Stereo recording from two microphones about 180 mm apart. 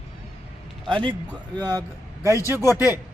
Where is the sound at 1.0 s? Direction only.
10° left (ahead or behind).